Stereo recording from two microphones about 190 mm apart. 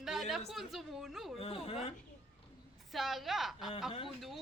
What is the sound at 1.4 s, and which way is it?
Speech, 30° left (ahead or behind).